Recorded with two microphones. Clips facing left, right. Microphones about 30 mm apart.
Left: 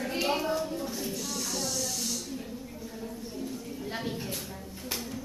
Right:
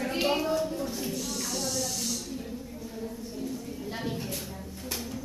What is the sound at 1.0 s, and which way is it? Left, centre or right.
Hiss, centre.